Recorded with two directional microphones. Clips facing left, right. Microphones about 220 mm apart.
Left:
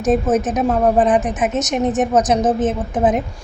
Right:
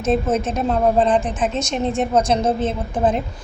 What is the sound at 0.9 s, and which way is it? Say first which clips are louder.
A woman's voice: left 2 dB; 20° left (ahead or behind).